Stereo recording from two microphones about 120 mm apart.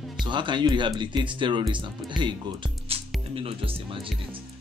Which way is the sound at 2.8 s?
50° right (ahead or behind).